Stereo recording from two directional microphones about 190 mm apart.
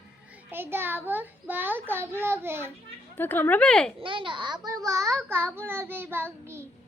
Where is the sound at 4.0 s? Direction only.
25° right (ahead or behind).